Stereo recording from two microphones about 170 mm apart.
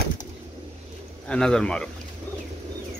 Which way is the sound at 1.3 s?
5° left (ahead or behind).